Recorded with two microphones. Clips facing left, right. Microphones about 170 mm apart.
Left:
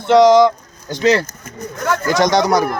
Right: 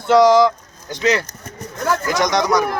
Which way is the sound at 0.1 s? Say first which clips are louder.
Left 2 dB; 20° left (ahead or behind).